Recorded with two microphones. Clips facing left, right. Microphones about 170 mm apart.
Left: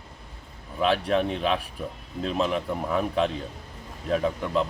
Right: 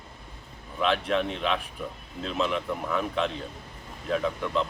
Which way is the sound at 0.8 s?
35° left (ahead or behind).